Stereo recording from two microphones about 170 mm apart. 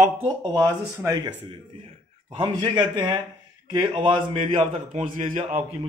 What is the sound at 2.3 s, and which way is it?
A man's voice, 30° right (ahead or behind).